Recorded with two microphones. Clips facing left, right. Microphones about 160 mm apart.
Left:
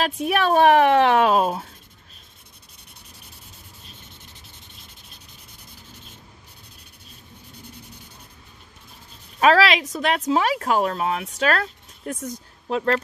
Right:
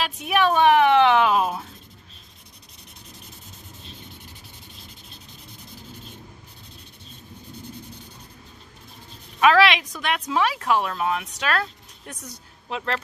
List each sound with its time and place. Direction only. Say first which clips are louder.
0.0 s a woman's voice: even; 40° left (ahead or behind)
9.4 s a woman's voice: even; 35° left (ahead or behind)
12.6 s speech: left 7 dB; 40° left (ahead or behind)